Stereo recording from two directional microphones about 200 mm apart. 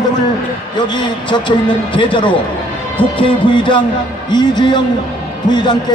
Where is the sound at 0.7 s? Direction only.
25° left (ahead or behind).